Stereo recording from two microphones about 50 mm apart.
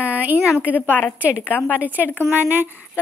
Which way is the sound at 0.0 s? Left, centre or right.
Right.